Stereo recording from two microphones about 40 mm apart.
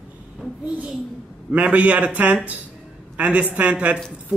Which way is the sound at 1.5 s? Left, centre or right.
Right.